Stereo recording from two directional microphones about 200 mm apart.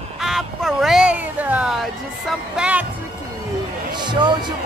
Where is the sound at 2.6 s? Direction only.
5° right (ahead or behind).